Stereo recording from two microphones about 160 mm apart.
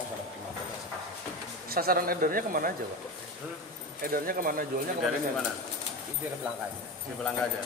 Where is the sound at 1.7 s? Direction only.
70° right (ahead or behind).